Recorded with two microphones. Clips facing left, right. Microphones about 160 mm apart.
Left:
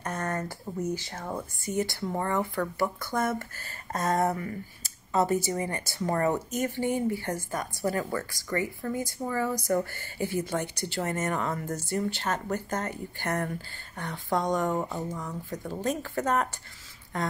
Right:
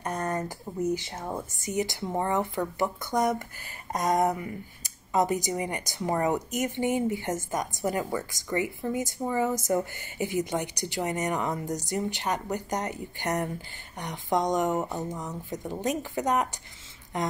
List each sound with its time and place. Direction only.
0.0 s speech: 15° right (ahead or behind)